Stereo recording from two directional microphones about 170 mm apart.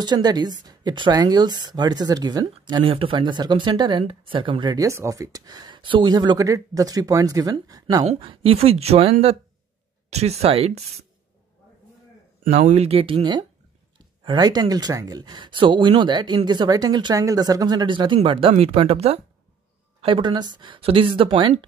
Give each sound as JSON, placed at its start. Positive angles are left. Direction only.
{"t": 0.0, "sound": "speech", "side_deg": -25}
{"t": 8.1, "sound": "speech", "side_deg": -30}
{"t": 12.4, "sound": "speech", "side_deg": -40}